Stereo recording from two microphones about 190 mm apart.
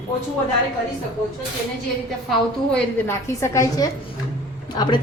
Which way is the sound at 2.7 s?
15° left (ahead or behind).